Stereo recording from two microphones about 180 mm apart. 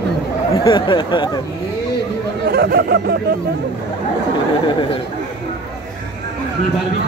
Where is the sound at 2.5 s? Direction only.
65° right (ahead or behind).